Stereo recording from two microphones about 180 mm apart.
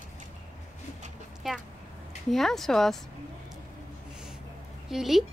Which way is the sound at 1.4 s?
5° right (ahead or behind).